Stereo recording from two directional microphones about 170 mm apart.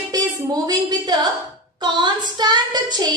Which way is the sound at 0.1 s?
20° right (ahead or behind).